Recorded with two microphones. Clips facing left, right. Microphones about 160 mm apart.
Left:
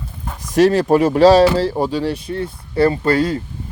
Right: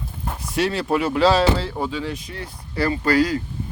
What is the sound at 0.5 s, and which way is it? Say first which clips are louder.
Speech: left 9 dB; 45° left (ahead or behind).